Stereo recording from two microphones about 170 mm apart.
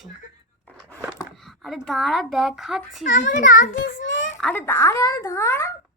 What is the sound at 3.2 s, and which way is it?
Speech, 50° left (ahead or behind).